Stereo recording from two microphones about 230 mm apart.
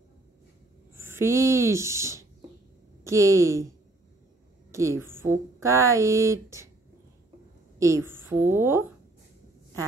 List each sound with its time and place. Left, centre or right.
0.9 s a woman's voice: centre
4.7 s speech: centre
7.8 s speech: centre